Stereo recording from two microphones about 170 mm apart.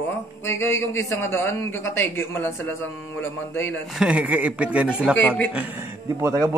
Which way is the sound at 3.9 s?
5° right (ahead or behind).